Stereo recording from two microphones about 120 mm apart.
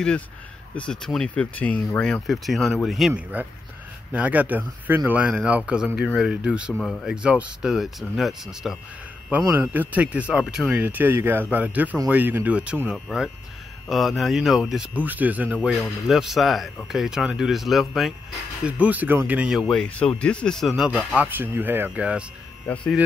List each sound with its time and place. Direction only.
0.7 s speech: 5° left (ahead or behind)
3.1 s speech: 15° right (ahead or behind)
9.6 s speech: 15° right (ahead or behind)
10.7 s speech: 15° right (ahead or behind)
15.0 s speech: 15° right (ahead or behind)
16.1 s speech: centre (ahead or behind)
18.6 s speech: 10° right (ahead or behind)